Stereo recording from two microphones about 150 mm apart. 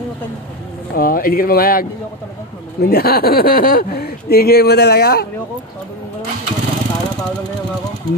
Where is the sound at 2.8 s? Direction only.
90° left.